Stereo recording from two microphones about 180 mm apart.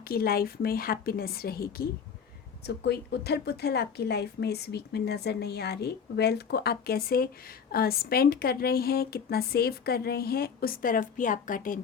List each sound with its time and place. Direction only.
0.1 s speech: 55° left (ahead or behind)
2.6 s speech: 65° left (ahead or behind); by 11.8 s 50° left (ahead or behind)